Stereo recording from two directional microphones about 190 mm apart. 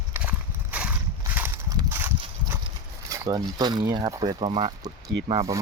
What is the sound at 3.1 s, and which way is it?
Speech, 20° right (ahead or behind).